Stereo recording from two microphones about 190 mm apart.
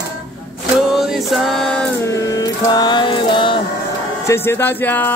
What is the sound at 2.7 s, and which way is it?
Mantra, 25° left (ahead or behind).